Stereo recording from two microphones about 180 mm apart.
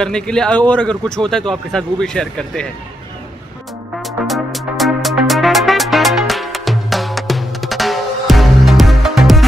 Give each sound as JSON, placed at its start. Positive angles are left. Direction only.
{"t": 0.0, "sound": "a man's voice", "side_deg": 5}
{"t": 4.0, "sound": "music", "side_deg": 0}